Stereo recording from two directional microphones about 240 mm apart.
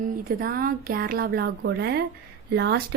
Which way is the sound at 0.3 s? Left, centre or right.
Right.